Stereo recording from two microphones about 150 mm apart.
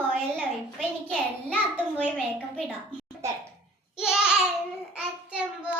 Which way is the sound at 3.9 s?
5° right (ahead or behind).